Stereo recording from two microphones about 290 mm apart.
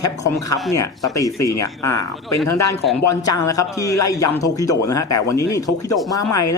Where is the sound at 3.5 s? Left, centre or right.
Centre.